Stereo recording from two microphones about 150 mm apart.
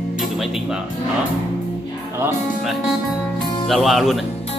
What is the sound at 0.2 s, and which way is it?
Music, centre (ahead or behind).